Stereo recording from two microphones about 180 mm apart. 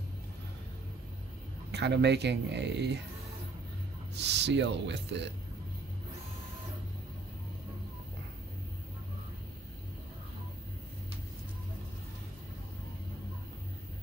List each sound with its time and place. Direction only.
1.7 s speech: 70° right (ahead or behind)
4.2 s speech: 75° right (ahead or behind)